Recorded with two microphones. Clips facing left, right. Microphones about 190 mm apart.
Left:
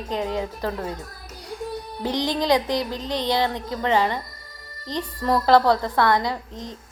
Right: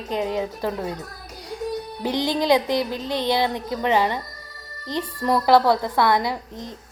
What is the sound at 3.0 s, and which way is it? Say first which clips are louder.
Music: right 1 dB; 15° left (ahead or behind).